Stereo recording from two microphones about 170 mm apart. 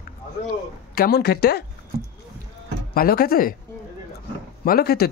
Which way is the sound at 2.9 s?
60° left (ahead or behind).